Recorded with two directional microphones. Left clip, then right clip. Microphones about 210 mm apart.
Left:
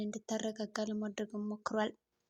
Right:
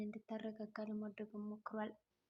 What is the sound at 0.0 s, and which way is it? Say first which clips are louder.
Speech: left 9 dB; 40° left (ahead or behind).